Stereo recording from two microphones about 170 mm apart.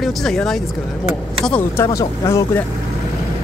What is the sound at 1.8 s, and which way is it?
Speech, 20° left (ahead or behind).